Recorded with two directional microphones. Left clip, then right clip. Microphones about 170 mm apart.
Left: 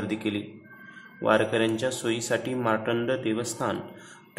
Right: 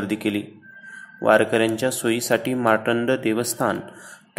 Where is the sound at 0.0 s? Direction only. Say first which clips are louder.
Right 5 dB; 15° right (ahead or behind).